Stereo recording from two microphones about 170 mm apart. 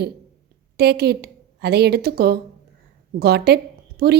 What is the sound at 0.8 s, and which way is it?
A woman's voice, 70° right (ahead or behind).